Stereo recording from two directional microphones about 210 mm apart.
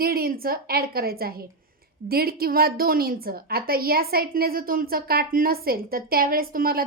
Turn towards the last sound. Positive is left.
turn(degrees=-45)  # may be behind; listen again after turning